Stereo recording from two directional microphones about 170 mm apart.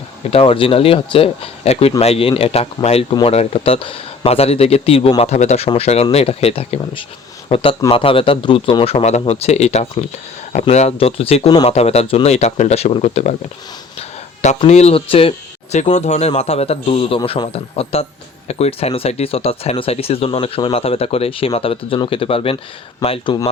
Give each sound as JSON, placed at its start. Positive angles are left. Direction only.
{"t": 0.3, "sound": "speech", "side_deg": 35}
{"t": 14.7, "sound": "speech", "side_deg": 40}